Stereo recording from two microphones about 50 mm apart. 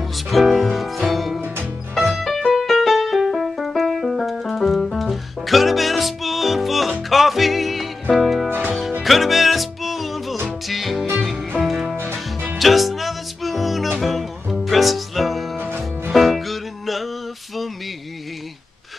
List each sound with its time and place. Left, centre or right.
0.3 s music: centre
2.5 s music: centre
12.0 s music: right
12.5 s music: centre
15.5 s music: right
16.1 s music: centre